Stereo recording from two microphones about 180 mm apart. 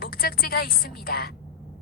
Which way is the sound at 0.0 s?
55° left (ahead or behind).